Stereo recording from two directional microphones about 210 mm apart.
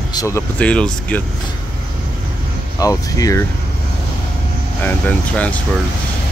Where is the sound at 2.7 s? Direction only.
15° left (ahead or behind).